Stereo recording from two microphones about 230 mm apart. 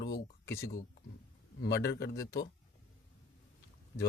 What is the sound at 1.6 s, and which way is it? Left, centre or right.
Speech, left.